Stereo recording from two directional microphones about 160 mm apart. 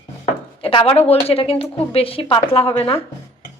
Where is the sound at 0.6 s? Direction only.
35° left (ahead or behind).